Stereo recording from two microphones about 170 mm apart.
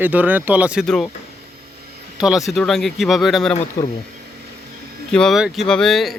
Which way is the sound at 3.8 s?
20° left (ahead or behind).